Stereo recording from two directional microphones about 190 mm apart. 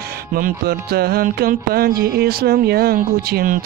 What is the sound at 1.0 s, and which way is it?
Music, 55° right (ahead or behind).